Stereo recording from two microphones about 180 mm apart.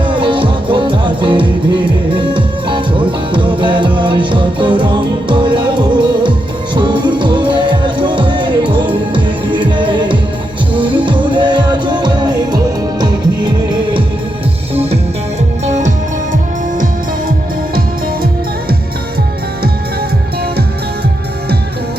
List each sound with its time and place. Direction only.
0.0 s music: 25° right (ahead or behind)
15.6 s music: 40° right (ahead or behind)